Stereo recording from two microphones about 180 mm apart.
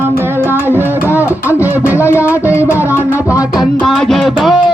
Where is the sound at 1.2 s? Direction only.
15° left (ahead or behind).